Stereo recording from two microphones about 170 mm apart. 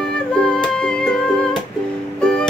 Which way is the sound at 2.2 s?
5° left (ahead or behind).